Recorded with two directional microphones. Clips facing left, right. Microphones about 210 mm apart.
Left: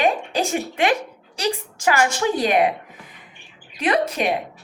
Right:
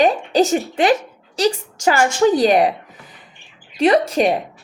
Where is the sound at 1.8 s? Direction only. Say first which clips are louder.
Right 5 dB; 30° right (ahead or behind).